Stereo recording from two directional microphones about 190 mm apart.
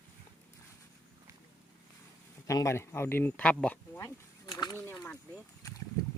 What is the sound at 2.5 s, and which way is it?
Speech, 15° left (ahead or behind).